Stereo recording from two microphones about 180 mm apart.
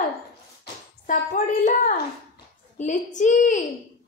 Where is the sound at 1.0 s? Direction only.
45° left (ahead or behind).